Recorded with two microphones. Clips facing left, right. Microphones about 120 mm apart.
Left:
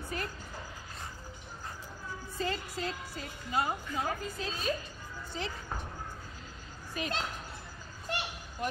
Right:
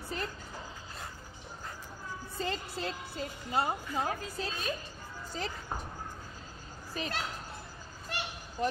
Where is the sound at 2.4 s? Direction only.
30° right (ahead or behind).